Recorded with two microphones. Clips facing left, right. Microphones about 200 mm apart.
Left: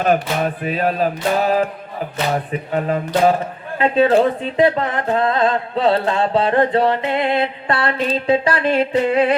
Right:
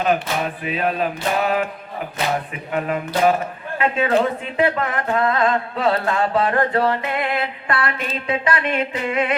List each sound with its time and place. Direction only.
0.0 s music: 45° left (ahead or behind)
3.8 s speech: 30° left (ahead or behind)